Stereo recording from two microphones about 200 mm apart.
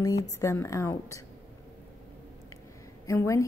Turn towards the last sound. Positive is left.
turn(degrees=15)  # may be behind; listen again after turning